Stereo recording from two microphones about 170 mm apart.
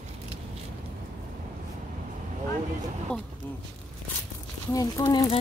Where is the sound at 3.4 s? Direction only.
10° left (ahead or behind).